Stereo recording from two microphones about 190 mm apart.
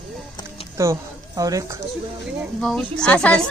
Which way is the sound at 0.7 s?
15° right (ahead or behind).